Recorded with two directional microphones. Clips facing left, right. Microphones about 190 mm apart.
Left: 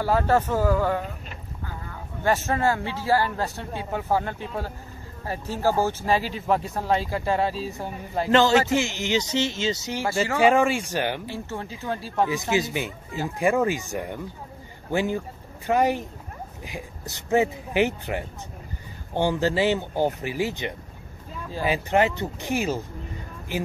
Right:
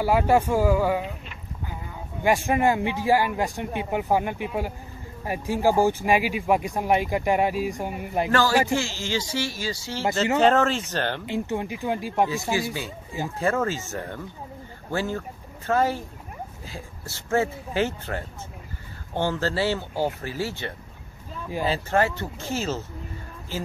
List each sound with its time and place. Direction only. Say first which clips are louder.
0.0 s speech: right 1 dB; 10° right (ahead or behind)
8.3 s speech: left 4 dB; 20° left (ahead or behind)
11.2 s speech: right 5 dB; 15° right (ahead or behind)
12.3 s speech: left 2 dB; 20° left (ahead or behind)